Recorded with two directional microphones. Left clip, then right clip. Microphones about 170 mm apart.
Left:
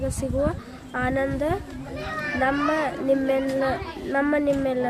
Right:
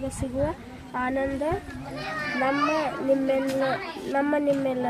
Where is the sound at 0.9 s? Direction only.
20° left (ahead or behind).